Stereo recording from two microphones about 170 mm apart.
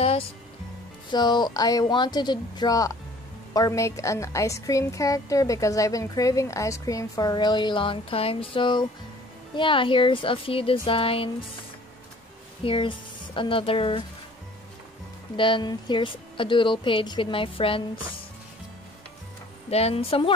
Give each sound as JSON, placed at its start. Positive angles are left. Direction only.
{"t": 1.1, "sound": "a woman's voice", "side_deg": 25}
{"t": 12.6, "sound": "speech", "side_deg": 30}
{"t": 15.3, "sound": "a woman's voice", "side_deg": 30}
{"t": 19.7, "sound": "speech", "side_deg": 35}